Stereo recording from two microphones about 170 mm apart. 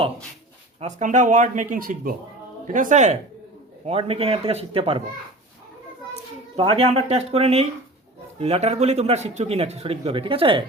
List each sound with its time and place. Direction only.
0.8 s speech: 45° right (ahead or behind)
3.8 s speech: 35° right (ahead or behind)
6.6 s speech: 35° right (ahead or behind)